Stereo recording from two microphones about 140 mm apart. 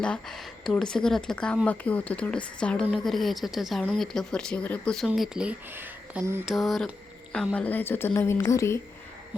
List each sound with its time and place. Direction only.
0.0 s a woman's voice: 5° left (ahead or behind)
5.0 s speech: 5° right (ahead or behind)
6.4 s a woman's voice: centre (ahead or behind); by 8.8 s 20° left (ahead or behind)